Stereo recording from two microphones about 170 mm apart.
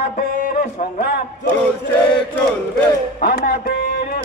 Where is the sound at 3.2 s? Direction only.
55° left (ahead or behind).